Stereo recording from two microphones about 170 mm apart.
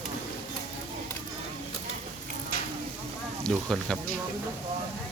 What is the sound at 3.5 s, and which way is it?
Speech, centre (ahead or behind).